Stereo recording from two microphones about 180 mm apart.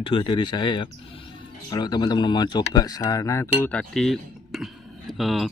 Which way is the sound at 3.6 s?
5° left (ahead or behind).